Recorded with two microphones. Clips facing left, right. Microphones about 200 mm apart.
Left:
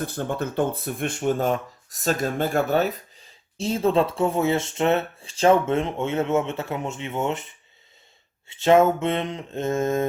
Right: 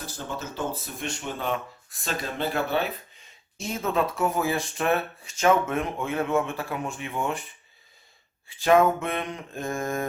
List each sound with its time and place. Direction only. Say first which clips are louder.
0.0 s speech: left 8 dB; 55° left (ahead or behind); by 10.1 s 25° left (ahead or behind)